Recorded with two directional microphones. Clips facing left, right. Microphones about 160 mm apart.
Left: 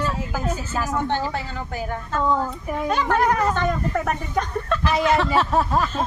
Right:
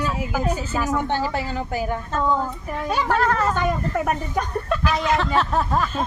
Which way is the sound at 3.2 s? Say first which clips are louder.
Left 2 dB; 15° left (ahead or behind).